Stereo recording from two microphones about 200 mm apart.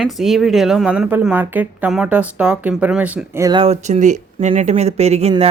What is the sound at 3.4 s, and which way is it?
A woman's voice, 25° right (ahead or behind).